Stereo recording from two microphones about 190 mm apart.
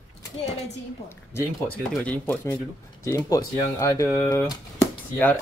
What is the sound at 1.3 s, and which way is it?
Speech, 5° left (ahead or behind).